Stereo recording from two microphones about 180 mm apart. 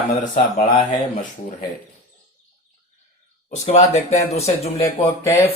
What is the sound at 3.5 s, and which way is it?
Speech, 40° left (ahead or behind).